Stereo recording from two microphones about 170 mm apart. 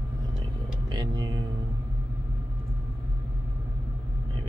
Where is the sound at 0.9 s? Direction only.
25° right (ahead or behind).